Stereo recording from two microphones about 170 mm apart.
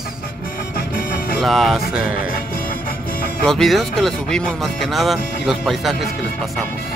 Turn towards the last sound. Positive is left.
turn(degrees=0)  # may be behind; listen again after turning